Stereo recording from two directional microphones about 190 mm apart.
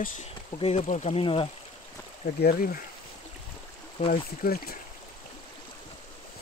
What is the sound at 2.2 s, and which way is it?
Speech, 45° left (ahead or behind).